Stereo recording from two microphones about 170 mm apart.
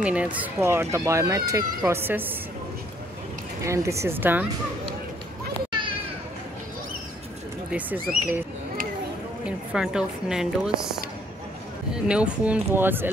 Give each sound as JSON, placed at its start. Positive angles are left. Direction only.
{"t": 0.0, "sound": "speech", "side_deg": -5}
{"t": 3.6, "sound": "speech", "side_deg": -15}
{"t": 7.7, "sound": "speech", "side_deg": -10}
{"t": 9.7, "sound": "a woman's voice", "side_deg": -5}